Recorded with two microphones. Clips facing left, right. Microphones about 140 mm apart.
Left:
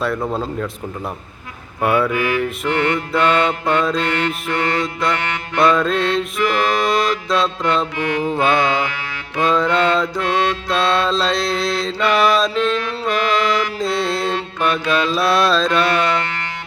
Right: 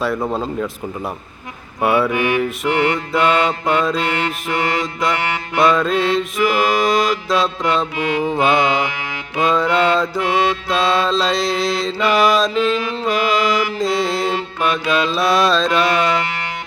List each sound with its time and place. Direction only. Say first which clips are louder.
0.3 s mantra: right 1 dB; 5° right (ahead or behind)
2.0 s mantra: right 1 dB; 20° right (ahead or behind)
4.8 s mantra: even; centre (ahead or behind)
16.2 s music: right 2 dB; 10° right (ahead or behind)